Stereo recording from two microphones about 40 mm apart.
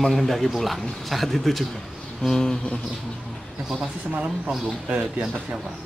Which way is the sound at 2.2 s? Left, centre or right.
Centre.